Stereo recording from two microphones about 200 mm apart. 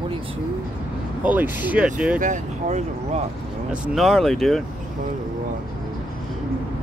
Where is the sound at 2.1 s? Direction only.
40° right (ahead or behind).